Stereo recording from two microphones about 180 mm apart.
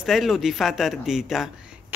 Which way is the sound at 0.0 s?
Centre (ahead or behind).